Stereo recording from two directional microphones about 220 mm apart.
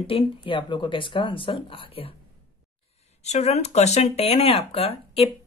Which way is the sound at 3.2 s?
30° left (ahead or behind).